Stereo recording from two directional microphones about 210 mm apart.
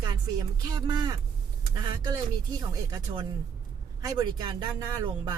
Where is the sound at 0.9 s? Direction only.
20° right (ahead or behind).